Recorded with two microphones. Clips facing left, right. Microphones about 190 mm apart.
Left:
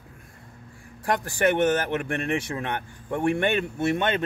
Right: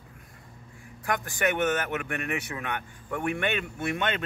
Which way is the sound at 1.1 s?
30° left (ahead or behind).